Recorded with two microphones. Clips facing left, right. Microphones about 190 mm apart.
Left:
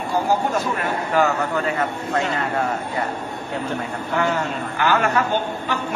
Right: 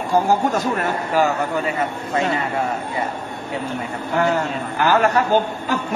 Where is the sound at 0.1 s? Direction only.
45° right (ahead or behind).